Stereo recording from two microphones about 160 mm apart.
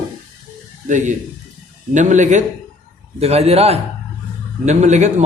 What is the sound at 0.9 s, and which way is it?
A man's voice, 50° right (ahead or behind).